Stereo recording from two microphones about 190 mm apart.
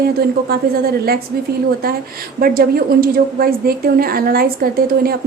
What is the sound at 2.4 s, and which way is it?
A woman's voice, 50° right (ahead or behind).